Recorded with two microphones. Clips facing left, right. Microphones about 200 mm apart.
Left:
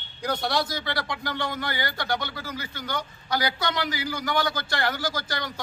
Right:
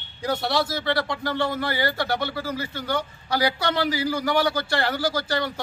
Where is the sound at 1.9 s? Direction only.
10° right (ahead or behind).